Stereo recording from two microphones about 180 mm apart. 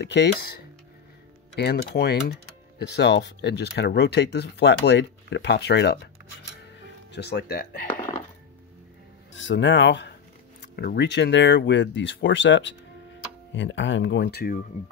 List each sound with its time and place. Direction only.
0.0 s speech: 70° left (ahead or behind)
1.9 s speech: 65° left (ahead or behind)
7.1 s speech: 65° left (ahead or behind)
9.3 s speech: 90° left
10.6 s speech: 65° left (ahead or behind)